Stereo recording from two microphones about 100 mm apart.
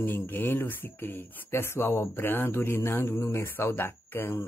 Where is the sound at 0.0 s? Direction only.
20° left (ahead or behind).